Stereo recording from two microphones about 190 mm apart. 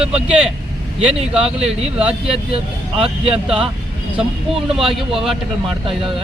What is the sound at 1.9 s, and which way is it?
Speech, 5° right (ahead or behind).